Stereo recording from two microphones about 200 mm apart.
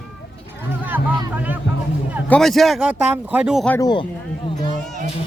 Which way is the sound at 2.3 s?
5° left (ahead or behind).